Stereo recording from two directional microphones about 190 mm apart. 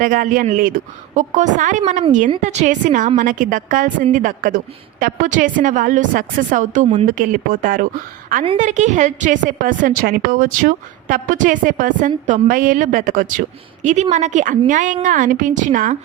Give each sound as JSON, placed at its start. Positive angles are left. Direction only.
{"t": 0.0, "sound": "a woman's voice", "side_deg": -45}